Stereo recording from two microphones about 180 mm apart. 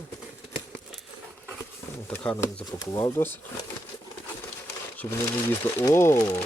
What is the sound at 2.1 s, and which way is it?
Speech, 10° left (ahead or behind).